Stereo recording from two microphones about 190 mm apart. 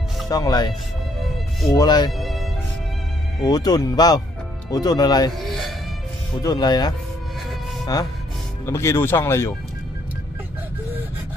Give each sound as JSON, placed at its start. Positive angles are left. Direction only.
{"t": 0.3, "sound": "speech", "side_deg": 20}
{"t": 2.1, "sound": "speech", "side_deg": 0}
{"t": 3.4, "sound": "speech", "side_deg": 20}
{"t": 5.4, "sound": "music", "side_deg": 0}
{"t": 6.4, "sound": "speech", "side_deg": 20}